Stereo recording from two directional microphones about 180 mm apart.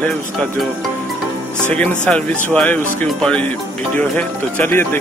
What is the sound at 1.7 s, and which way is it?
Speech, 5° left (ahead or behind).